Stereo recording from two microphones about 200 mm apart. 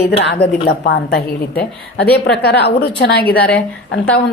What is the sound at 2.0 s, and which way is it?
Speech, 5° left (ahead or behind).